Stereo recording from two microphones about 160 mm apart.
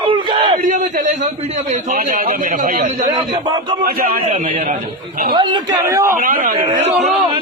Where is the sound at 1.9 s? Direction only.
60° right (ahead or behind).